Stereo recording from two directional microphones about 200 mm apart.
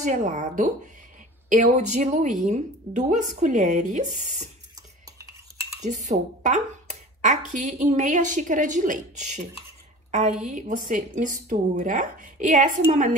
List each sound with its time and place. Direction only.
0.0 s speech: 35° right (ahead or behind)
5.9 s speech: 35° right (ahead or behind)
10.4 s speech: 40° right (ahead or behind)